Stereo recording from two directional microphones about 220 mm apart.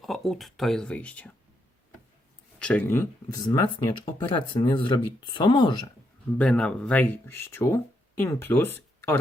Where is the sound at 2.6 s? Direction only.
5° left (ahead or behind).